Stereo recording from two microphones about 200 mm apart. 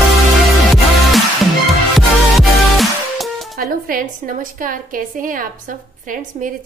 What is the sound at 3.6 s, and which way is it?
A woman's voice, 45° right (ahead or behind).